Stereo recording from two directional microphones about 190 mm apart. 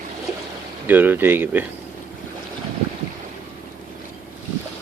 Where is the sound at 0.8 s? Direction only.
10° right (ahead or behind).